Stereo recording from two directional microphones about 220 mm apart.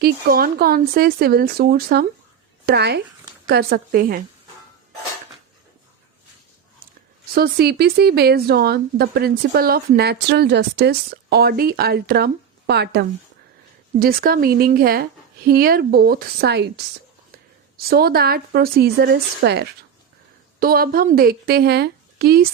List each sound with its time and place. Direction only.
0.0 s speech: 45° right (ahead or behind)
7.3 s a woman's voice: 45° right (ahead or behind)